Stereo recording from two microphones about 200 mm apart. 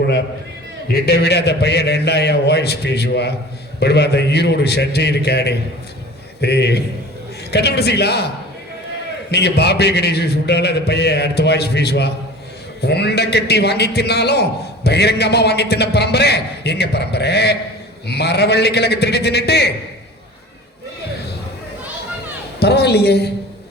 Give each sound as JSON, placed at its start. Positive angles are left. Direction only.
{"t": 1.0, "sound": "a man's voice", "side_deg": 55}
{"t": 9.3, "sound": "a man's voice", "side_deg": 55}
{"t": 22.6, "sound": "a man's voice", "side_deg": 55}